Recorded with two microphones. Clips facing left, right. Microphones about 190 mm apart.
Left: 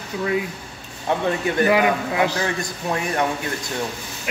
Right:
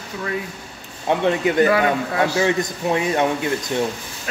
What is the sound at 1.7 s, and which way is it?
Speech, 15° left (ahead or behind).